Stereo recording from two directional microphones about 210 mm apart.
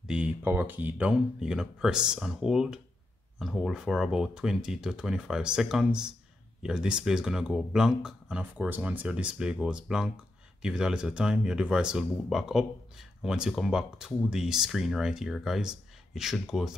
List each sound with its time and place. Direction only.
0.0 s speech: 5° right (ahead or behind)